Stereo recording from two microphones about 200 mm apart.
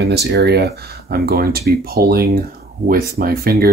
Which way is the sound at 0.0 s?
55° right (ahead or behind).